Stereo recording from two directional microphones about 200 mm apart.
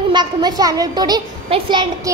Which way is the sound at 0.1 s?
20° right (ahead or behind).